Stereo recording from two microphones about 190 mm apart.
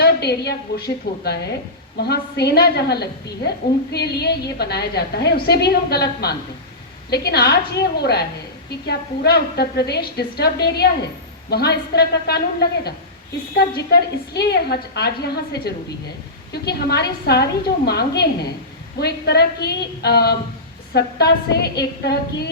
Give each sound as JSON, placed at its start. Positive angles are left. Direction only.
{"t": 0.0, "sound": "a woman's voice", "side_deg": 60}